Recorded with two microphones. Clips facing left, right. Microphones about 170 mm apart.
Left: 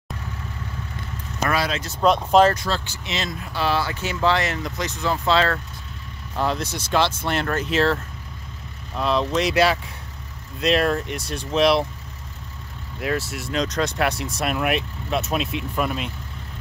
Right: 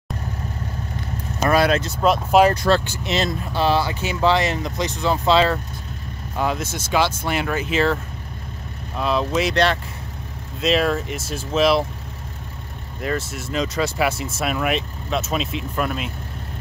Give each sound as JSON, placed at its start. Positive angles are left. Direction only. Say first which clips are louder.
{"t": 1.5, "sound": "speech", "louder": "right 7 dB", "side_deg": -50}
{"t": 2.0, "sound": "speech", "louder": "left 1 dB", "side_deg": -5}
{"t": 2.6, "sound": "speech", "louder": "right 8 dB", "side_deg": -50}
{"t": 3.5, "sound": "speech", "louder": "right 3 dB", "side_deg": -20}
{"t": 13.0, "sound": "speech", "louder": "even", "side_deg": 0}